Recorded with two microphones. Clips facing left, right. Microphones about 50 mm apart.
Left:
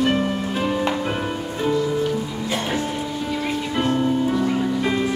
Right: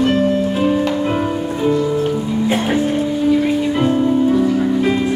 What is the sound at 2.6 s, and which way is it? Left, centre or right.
Music, centre.